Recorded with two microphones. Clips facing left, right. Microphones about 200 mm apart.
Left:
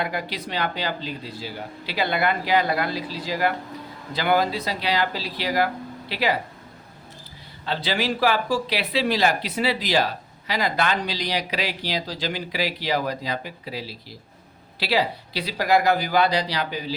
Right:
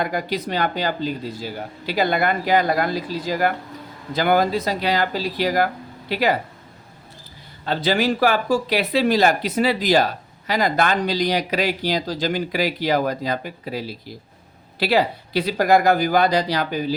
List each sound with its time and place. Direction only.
0.0 s speech: 45° right (ahead or behind)
7.6 s speech: 45° right (ahead or behind)